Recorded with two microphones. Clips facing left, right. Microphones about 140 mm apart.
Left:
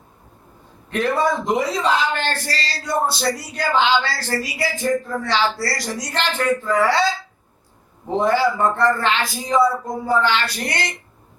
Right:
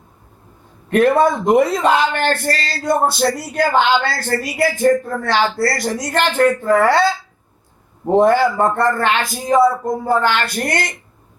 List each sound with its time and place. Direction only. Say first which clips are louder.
0.9 s a man's voice: right 7 dB; 55° right (ahead or behind)